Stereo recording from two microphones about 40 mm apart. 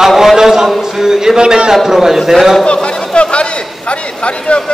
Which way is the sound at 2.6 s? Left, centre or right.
Left.